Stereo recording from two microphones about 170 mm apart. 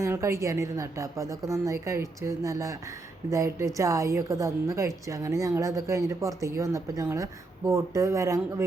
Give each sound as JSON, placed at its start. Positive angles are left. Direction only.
{"t": 0.0, "sound": "a woman's voice", "side_deg": -15}